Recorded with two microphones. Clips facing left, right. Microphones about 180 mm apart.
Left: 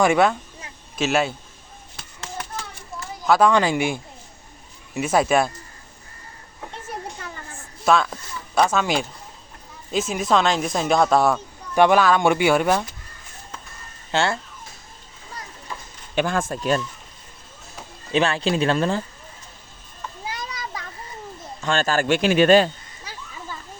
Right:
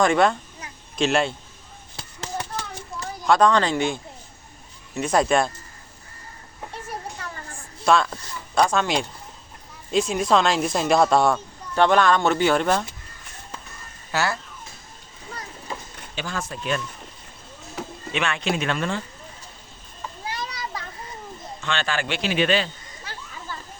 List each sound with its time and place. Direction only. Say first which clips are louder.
0.0 s speech: left 1 dB; 5° left (ahead or behind)
2.0 s a sound: right 3 dB; 30° right (ahead or behind)
2.9 s a sound: even; centre (ahead or behind)
3.2 s speech: left 1 dB; 5° left (ahead or behind)
7.5 s speech: even; centre (ahead or behind)
14.1 s speech: left 3 dB; 25° left (ahead or behind)
16.1 s a man's voice: left 8 dB; 55° left (ahead or behind)
18.1 s speech: left 5 dB; 35° left (ahead or behind)
21.6 s a man's voice: left 5 dB; 40° left (ahead or behind)